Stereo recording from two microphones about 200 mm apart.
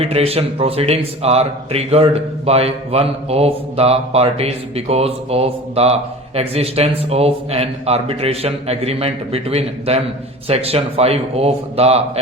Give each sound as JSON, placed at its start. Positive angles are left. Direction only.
{"t": 0.0, "sound": "speech", "side_deg": -30}